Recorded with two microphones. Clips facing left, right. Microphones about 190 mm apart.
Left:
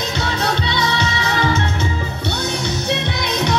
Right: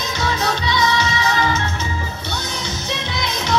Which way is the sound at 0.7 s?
60° left (ahead or behind).